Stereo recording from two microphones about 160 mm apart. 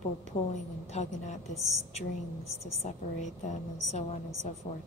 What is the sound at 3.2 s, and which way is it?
A woman's voice, 45° left (ahead or behind).